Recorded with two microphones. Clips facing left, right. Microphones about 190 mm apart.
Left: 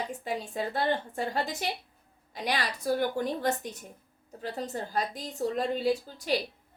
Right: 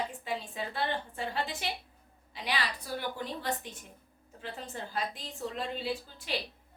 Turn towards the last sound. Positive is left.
turn(degrees=45)  # may be behind; listen again after turning